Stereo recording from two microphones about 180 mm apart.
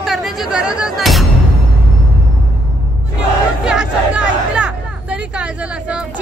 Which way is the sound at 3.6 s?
5° right (ahead or behind).